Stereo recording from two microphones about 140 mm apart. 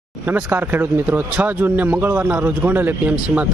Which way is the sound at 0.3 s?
15° right (ahead or behind).